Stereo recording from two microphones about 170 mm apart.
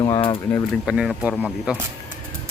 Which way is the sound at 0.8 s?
Centre (ahead or behind).